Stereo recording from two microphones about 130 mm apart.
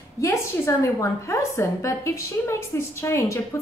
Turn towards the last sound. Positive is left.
turn(degrees=20)  # may be behind; listen again after turning